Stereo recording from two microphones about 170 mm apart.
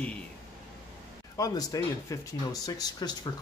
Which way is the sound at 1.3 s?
20° left (ahead or behind).